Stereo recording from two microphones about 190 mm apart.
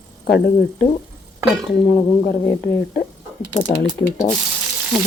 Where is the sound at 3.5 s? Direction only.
25° left (ahead or behind).